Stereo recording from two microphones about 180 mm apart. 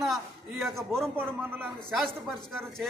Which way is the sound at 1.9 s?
Centre (ahead or behind).